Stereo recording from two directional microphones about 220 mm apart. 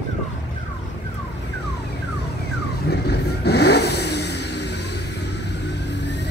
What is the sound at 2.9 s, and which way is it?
Vehicle, 45° left (ahead or behind).